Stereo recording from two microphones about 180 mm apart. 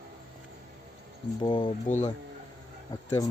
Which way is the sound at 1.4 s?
25° left (ahead or behind).